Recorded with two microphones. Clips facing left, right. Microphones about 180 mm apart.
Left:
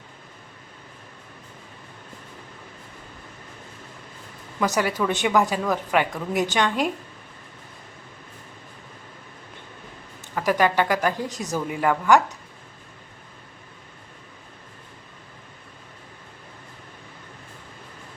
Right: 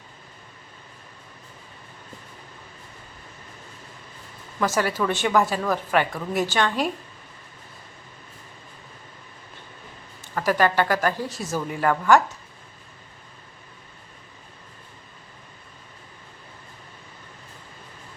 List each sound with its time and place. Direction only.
4.6 s a woman's voice: 15° left (ahead or behind)
10.3 s a woman's voice: 15° left (ahead or behind)